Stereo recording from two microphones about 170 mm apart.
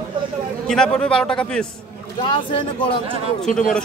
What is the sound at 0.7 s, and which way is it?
Speech, 5° left (ahead or behind).